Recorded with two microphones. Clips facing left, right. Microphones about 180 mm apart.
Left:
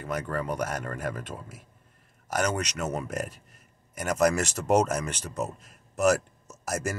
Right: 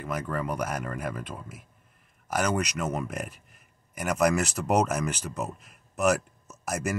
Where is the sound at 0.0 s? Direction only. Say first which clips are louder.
Even; 5° right (ahead or behind).